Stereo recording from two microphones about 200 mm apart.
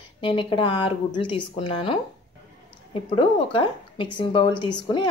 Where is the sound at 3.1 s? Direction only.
25° left (ahead or behind).